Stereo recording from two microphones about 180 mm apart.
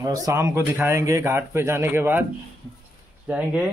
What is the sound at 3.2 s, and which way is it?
Speech, 5° right (ahead or behind).